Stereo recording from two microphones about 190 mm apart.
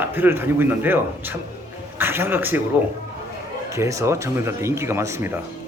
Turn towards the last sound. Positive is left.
turn(degrees=-15)  # may be behind; listen again after turning